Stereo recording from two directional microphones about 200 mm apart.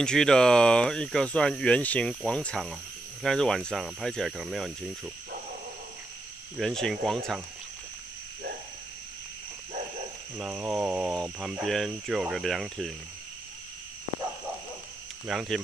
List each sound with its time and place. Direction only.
0.0 s speech: 5° left (ahead or behind)
6.5 s speech: centre (ahead or behind)
10.4 s speech: 5° right (ahead or behind)
15.2 s speech: centre (ahead or behind)